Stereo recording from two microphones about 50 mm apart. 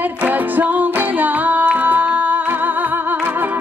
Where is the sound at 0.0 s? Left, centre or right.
Right.